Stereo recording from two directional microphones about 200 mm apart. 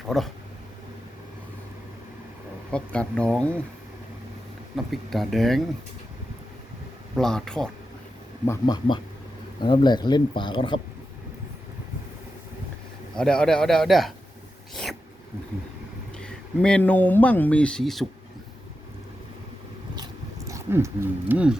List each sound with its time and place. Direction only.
2.7 s a man's voice: 5° left (ahead or behind)
4.9 s a man's voice: centre (ahead or behind)
7.2 s a man's voice: centre (ahead or behind)
8.4 s speech: 20° left (ahead or behind)
13.1 s a man's voice: 5° left (ahead or behind)
14.7 s a sound: centre (ahead or behind)
16.1 s speech: 5° left (ahead or behind)
20.0 s a sound: 15° right (ahead or behind)